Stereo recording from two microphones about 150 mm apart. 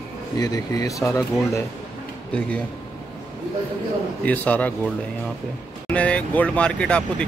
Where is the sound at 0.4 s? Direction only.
25° left (ahead or behind).